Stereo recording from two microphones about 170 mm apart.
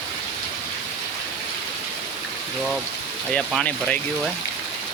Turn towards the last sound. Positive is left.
turn(degrees=5)  # may be behind; listen again after turning